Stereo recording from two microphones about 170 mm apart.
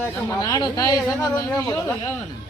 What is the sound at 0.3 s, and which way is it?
Speech, 20° left (ahead or behind).